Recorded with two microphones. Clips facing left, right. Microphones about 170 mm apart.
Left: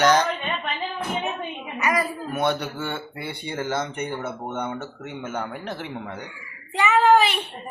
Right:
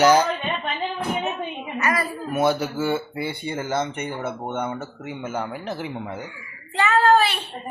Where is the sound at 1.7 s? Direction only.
15° left (ahead or behind).